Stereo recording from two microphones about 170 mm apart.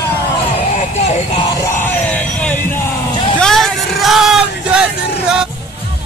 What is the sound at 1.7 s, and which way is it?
Music, 10° left (ahead or behind).